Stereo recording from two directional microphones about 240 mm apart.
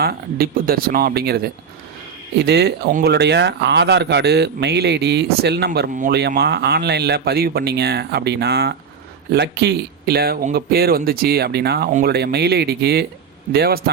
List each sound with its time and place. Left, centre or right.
0.0 s speech: right
2.4 s speech: right